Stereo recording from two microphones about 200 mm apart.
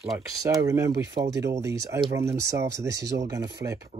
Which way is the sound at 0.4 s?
15° right (ahead or behind).